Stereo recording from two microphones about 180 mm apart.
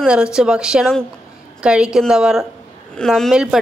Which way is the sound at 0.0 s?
5° right (ahead or behind).